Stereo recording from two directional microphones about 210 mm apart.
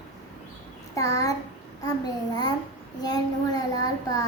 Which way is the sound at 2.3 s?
20° left (ahead or behind).